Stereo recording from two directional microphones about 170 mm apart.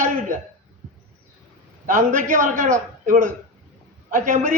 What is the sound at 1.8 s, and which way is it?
A man's voice, 50° right (ahead or behind).